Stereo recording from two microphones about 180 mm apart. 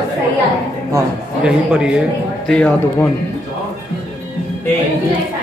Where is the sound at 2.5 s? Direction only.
5° left (ahead or behind).